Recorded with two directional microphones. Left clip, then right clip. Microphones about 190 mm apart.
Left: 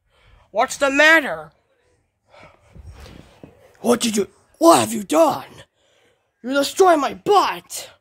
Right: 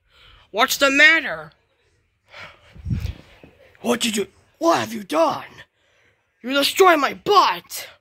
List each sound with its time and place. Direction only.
0.5 s speech: 5° left (ahead or behind)
0.9 s a man's voice: 35° left (ahead or behind)
2.2 s gasp: centre (ahead or behind)
3.8 s a man's voice: 40° left (ahead or behind)
4.6 s speech: 60° left (ahead or behind); by 5.5 s 40° left (ahead or behind)
5.5 s a sound: 55° left (ahead or behind)
6.5 s speech: 25° left (ahead or behind)